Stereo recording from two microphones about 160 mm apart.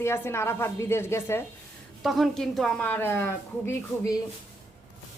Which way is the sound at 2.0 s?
Centre (ahead or behind).